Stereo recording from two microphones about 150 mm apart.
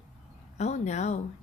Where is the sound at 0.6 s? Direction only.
50° left (ahead or behind).